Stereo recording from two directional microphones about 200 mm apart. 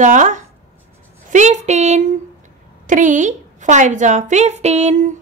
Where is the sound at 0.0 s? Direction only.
40° right (ahead or behind).